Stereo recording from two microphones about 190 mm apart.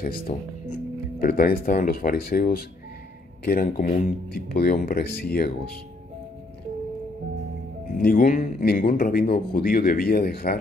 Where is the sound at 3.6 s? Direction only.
45° left (ahead or behind).